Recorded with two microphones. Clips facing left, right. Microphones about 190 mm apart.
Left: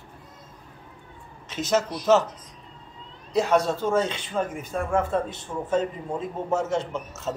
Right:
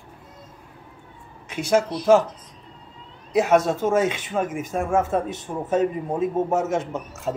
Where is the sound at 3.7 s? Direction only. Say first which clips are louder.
Right 3 dB; 20° right (ahead or behind).